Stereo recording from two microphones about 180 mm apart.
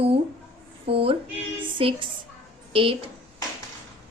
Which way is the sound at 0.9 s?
30° right (ahead or behind).